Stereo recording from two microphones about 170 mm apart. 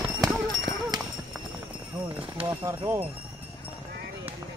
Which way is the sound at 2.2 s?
30° right (ahead or behind).